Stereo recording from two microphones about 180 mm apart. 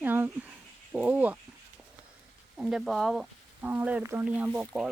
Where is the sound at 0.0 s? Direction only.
10° right (ahead or behind).